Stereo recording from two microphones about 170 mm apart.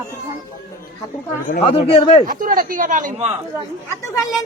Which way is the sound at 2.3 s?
55° right (ahead or behind).